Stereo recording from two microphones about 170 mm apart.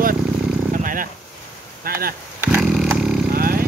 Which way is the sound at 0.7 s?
55° right (ahead or behind).